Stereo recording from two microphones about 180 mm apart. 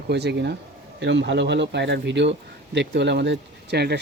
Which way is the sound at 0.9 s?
80° right.